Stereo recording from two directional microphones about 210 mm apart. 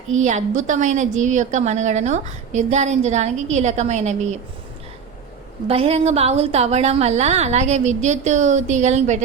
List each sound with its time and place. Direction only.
0.1 s a woman's voice: 35° right (ahead or behind)
5.6 s a woman's voice: 25° right (ahead or behind)